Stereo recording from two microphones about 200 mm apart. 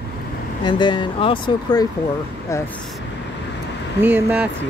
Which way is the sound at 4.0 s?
10° right (ahead or behind).